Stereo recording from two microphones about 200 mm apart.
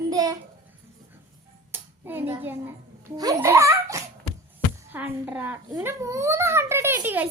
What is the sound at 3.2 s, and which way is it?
Giggle, 15° right (ahead or behind).